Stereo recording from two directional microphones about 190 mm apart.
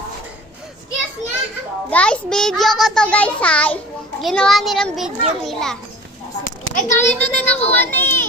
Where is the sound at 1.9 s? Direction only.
5° left (ahead or behind).